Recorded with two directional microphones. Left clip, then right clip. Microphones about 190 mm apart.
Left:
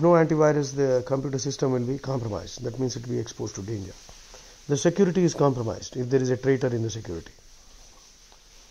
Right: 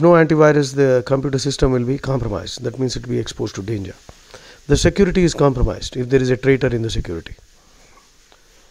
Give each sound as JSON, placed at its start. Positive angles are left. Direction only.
{"t": 0.0, "sound": "speech", "side_deg": -35}